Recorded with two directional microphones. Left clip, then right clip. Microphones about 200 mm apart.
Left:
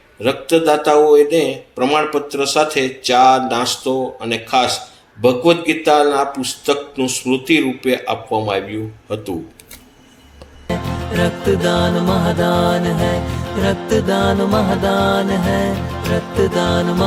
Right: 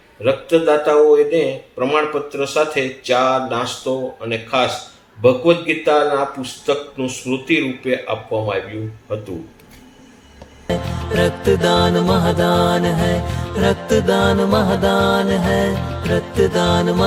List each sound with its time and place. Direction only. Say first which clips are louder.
0.2 s speech: even; 50° left (ahead or behind)
10.8 s music: right 1 dB; centre (ahead or behind)